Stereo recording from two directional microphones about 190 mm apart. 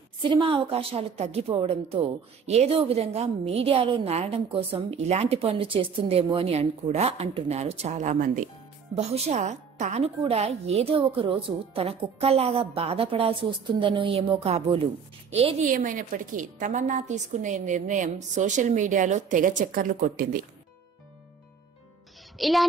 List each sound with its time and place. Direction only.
0.2 s a woman's voice: 25° right (ahead or behind)
15.6 s a woman's voice: 45° right (ahead or behind)
22.4 s speech: centre (ahead or behind)